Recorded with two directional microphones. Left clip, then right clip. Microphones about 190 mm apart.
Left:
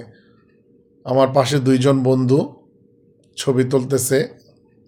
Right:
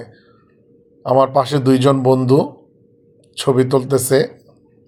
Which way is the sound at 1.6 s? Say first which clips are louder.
Right 3 dB; 35° left (ahead or behind).